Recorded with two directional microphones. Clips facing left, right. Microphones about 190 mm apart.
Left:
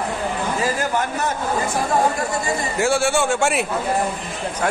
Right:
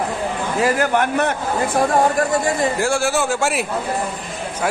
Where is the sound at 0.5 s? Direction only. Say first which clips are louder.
Right 7 dB; 65° right (ahead or behind).